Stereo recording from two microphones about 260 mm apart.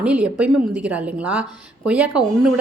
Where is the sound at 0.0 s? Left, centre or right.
Centre.